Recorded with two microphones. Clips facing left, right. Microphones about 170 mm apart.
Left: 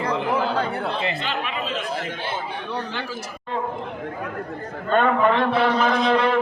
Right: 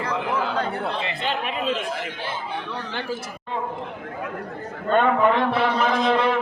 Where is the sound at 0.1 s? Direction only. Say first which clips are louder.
Left 2 dB; 30° left (ahead or behind).